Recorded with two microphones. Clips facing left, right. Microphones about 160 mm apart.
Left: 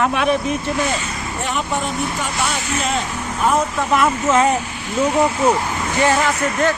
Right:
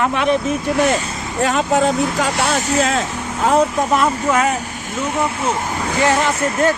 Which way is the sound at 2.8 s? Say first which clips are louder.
Right 2 dB; 90° right.